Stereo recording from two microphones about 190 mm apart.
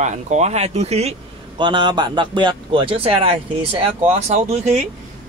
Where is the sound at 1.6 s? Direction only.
25° right (ahead or behind).